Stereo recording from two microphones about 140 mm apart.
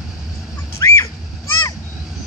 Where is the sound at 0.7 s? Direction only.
20° left (ahead or behind).